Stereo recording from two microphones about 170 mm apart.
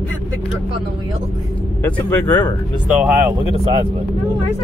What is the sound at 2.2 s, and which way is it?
Speech, 20° left (ahead or behind).